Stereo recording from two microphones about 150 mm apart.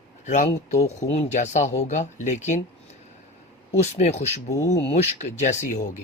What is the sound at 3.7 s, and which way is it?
Speech, 45° left (ahead or behind).